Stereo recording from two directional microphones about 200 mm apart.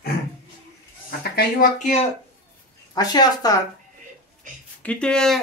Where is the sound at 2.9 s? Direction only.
20° left (ahead or behind).